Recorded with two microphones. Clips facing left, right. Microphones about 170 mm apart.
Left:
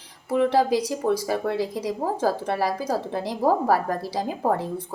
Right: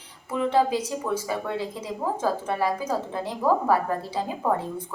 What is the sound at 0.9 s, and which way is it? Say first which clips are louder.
A woman's voice: left 4 dB; 35° left (ahead or behind).